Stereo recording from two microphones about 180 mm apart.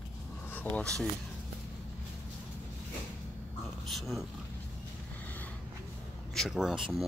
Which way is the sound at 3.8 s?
Centre (ahead or behind).